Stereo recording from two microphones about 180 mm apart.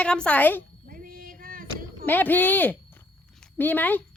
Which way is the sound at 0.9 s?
55° right (ahead or behind).